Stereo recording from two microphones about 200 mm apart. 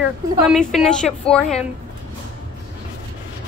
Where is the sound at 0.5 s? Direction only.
Centre (ahead or behind).